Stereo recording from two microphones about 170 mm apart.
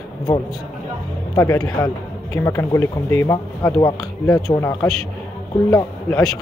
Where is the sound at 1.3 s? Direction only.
20° left (ahead or behind).